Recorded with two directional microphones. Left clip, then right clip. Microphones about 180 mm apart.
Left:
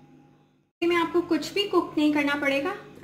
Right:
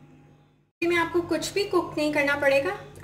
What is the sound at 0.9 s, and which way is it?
A woman's voice, 30° left (ahead or behind).